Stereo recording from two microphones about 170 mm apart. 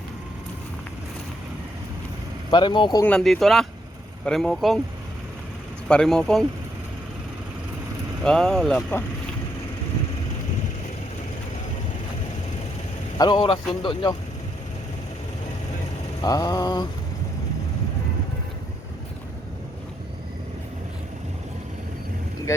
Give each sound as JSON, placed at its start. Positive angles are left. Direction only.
{"t": 2.5, "sound": "speech", "side_deg": 25}
{"t": 3.0, "sound": "speech", "side_deg": 5}
{"t": 5.9, "sound": "speech", "side_deg": 5}
{"t": 8.2, "sound": "speech", "side_deg": 5}
{"t": 13.1, "sound": "speech", "side_deg": 25}
{"t": 16.2, "sound": "speech", "side_deg": 20}